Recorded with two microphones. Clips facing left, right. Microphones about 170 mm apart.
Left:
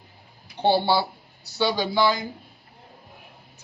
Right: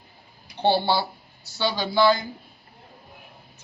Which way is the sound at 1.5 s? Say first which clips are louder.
Even; 15° left (ahead or behind).